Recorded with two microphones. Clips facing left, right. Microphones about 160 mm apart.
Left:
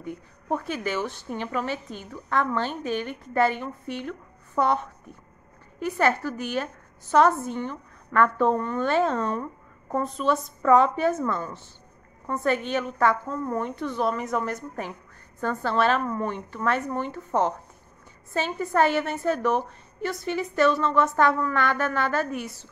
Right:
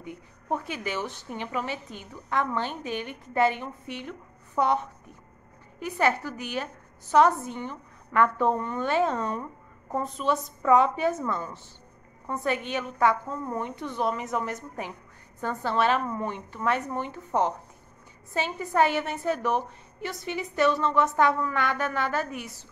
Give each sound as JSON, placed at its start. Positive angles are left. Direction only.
{"t": 0.0, "sound": "a woman's voice", "side_deg": -15}
{"t": 5.8, "sound": "a woman's voice", "side_deg": -15}
{"t": 12.6, "sound": "a woman's voice", "side_deg": -15}